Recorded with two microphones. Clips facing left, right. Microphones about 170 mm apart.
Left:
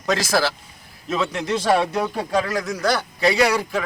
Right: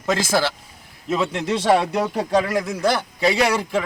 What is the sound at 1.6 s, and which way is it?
A man's voice, 20° right (ahead or behind).